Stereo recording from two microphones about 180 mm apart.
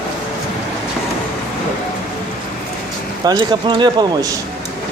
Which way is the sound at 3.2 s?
25° right (ahead or behind).